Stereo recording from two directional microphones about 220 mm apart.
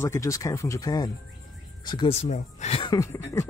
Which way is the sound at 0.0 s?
15° left (ahead or behind).